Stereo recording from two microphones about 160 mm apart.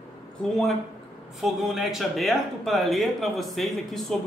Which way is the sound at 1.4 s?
Centre (ahead or behind).